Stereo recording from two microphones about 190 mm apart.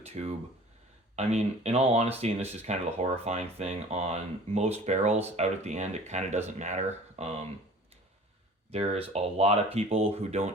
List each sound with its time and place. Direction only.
0.0 s speech: 35° right (ahead or behind)
8.7 s speech: 30° right (ahead or behind)